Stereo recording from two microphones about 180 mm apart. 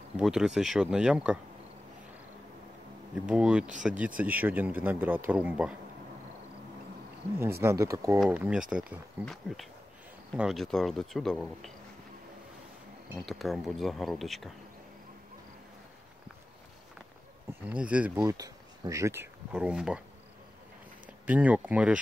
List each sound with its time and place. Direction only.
0.2 s speech: centre (ahead or behind)
3.3 s a man's voice: 5° right (ahead or behind)
7.6 s a man's voice: 15° right (ahead or behind); by 11.7 s centre (ahead or behind)
13.2 s speech: centre (ahead or behind)
17.5 s speech: 10° right (ahead or behind)
18.2 s speech: 20° right (ahead or behind)
19.5 s speech: 5° right (ahead or behind)
21.3 s a man's voice: 10° right (ahead or behind)